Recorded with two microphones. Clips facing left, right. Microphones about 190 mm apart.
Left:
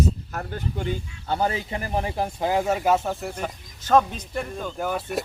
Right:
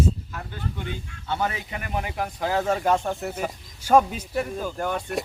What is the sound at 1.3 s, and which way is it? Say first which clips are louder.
A man's voice: left 3 dB; 35° left (ahead or behind).